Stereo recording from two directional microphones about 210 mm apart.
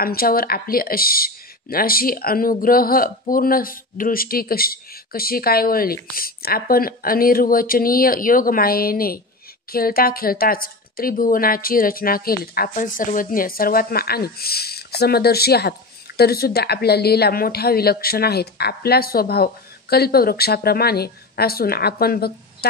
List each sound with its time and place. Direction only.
0.0 s speech: 45° left (ahead or behind)